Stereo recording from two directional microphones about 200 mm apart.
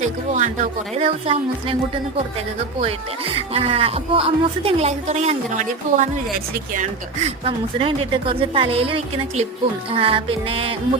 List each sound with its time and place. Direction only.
0.3 s speech: 40° right (ahead or behind)
3.3 s speech: 30° right (ahead or behind)